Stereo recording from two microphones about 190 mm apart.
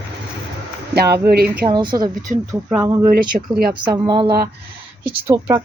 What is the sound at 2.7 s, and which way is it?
Speech, 15° right (ahead or behind).